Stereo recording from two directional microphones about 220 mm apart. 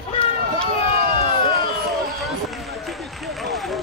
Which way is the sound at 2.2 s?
Centre (ahead or behind).